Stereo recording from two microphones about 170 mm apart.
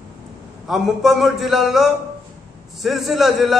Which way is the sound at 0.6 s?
Centre (ahead or behind).